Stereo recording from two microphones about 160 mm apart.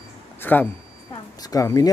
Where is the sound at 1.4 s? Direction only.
20° left (ahead or behind).